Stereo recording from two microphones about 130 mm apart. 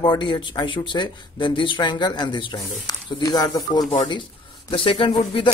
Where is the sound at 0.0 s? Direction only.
35° left (ahead or behind).